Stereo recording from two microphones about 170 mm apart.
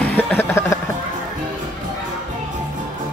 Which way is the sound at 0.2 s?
10° left (ahead or behind).